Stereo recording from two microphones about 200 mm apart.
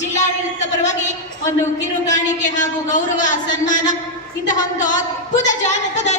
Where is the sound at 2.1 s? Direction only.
40° left (ahead or behind).